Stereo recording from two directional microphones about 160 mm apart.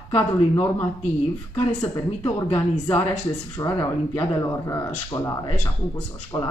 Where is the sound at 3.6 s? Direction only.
20° left (ahead or behind).